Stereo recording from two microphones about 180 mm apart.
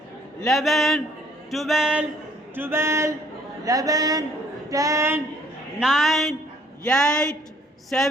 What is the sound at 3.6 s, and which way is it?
Speech, 20° right (ahead or behind).